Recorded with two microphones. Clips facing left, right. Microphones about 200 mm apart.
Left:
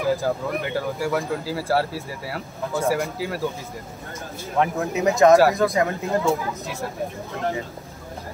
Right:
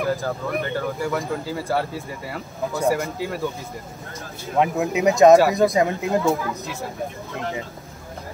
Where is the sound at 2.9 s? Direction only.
Centre (ahead or behind).